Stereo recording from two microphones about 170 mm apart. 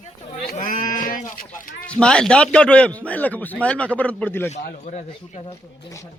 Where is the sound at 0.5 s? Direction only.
50° left (ahead or behind).